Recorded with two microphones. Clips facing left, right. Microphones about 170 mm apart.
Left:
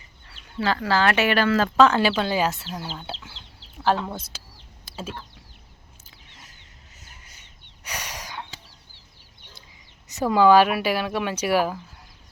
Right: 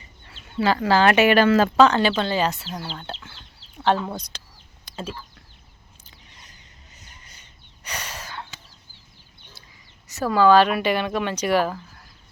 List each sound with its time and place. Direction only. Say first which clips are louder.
0.6 s speech: right 4 dB; 15° right (ahead or behind)
1.7 s speech: right 1 dB; centre (ahead or behind)
6.1 s a sound: even; centre (ahead or behind)
10.1 s speech: even; 15° left (ahead or behind)